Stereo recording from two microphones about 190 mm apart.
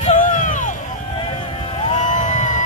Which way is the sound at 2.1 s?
40° left (ahead or behind).